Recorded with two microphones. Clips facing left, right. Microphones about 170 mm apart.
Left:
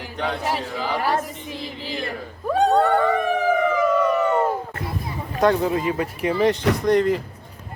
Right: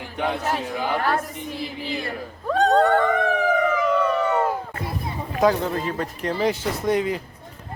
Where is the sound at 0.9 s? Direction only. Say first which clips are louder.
Even; 10° left (ahead or behind).